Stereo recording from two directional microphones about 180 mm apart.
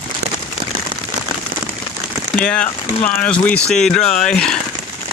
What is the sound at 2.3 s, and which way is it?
Speech, 5° left (ahead or behind).